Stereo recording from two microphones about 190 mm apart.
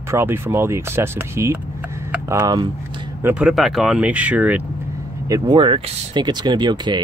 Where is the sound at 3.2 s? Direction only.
5° right (ahead or behind).